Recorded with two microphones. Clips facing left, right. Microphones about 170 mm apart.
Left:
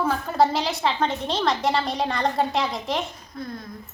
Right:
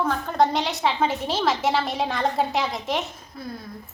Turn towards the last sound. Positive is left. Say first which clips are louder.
# left 1 dB
turn(degrees=-5)  # may be behind; listen again after turning